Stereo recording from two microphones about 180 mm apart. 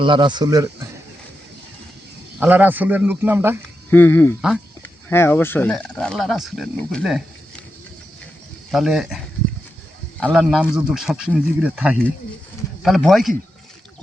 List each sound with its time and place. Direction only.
0.0 s speech: 25° right (ahead or behind)
2.4 s a man's voice: 10° right (ahead or behind)
3.8 s speech: 10° left (ahead or behind)
4.4 s a man's voice: 5° right (ahead or behind)
4.8 s speech: 10° left (ahead or behind)
8.7 s a man's voice: centre (ahead or behind)